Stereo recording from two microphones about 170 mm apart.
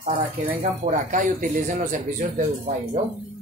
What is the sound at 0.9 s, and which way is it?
Speech, 50° right (ahead or behind).